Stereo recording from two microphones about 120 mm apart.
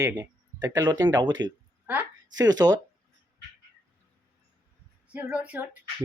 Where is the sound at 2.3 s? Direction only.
30° right (ahead or behind).